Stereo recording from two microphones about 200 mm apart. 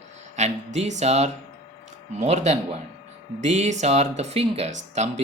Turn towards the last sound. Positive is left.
turn(degrees=-35)  # may be behind; listen again after turning